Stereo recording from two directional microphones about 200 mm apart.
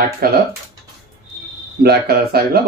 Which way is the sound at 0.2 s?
50° right (ahead or behind).